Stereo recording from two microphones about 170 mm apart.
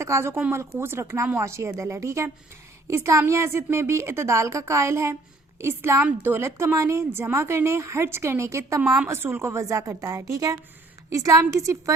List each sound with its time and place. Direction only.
0.0 s a woman's voice: 15° right (ahead or behind)